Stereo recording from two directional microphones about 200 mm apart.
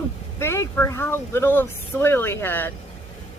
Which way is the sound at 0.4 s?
15° left (ahead or behind).